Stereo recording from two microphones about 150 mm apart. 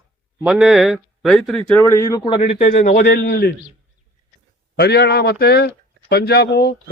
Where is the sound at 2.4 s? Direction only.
45° left (ahead or behind).